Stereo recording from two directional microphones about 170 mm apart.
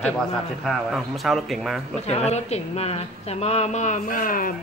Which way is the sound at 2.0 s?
40° left (ahead or behind).